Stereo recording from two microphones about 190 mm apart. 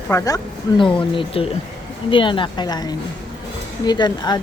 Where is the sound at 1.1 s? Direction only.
30° left (ahead or behind).